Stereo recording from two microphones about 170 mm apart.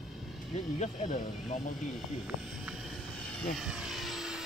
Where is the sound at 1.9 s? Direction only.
Centre (ahead or behind).